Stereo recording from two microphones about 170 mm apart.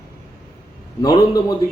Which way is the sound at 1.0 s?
20° left (ahead or behind).